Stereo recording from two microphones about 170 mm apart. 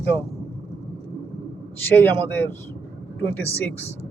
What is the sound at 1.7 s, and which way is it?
A man's voice, 10° left (ahead or behind).